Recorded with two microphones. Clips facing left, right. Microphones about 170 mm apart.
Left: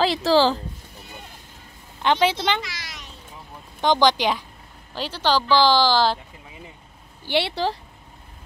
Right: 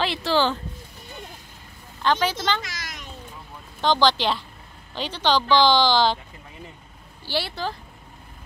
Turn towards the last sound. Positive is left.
turn(degrees=30)  # may be behind; listen again after turning